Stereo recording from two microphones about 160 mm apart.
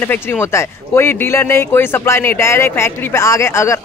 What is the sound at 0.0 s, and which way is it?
Speech, 15° left (ahead or behind).